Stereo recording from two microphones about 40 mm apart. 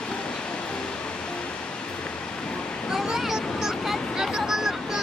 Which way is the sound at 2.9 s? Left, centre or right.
Centre.